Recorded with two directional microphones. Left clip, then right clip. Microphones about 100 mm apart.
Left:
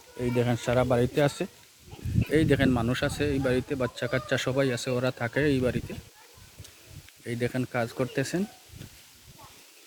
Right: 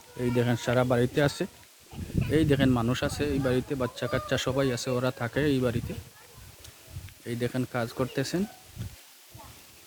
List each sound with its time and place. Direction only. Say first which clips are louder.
0.2 s speech: even; 30° right (ahead or behind)
2.3 s speech: left 1 dB; 20° right (ahead or behind)
7.3 s speech: left 1 dB; 5° right (ahead or behind)